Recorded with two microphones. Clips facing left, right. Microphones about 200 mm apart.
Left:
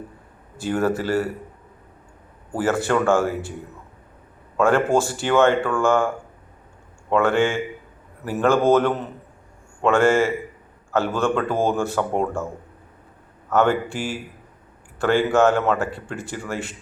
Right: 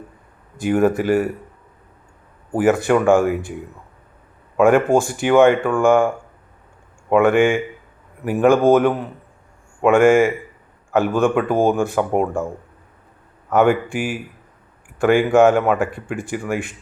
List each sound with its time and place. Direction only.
0.5 s speech: 15° right (ahead or behind)
2.5 s speech: 15° right (ahead or behind)
4.5 s speech: 15° right (ahead or behind)
13.5 s speech: 15° right (ahead or behind)